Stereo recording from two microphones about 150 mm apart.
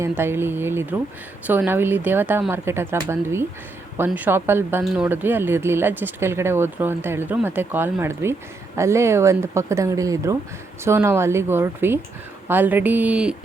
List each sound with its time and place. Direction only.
0.0 s speech: 15° right (ahead or behind)